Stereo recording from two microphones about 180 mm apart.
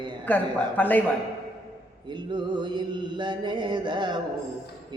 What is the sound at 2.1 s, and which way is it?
Mantra, 25° right (ahead or behind).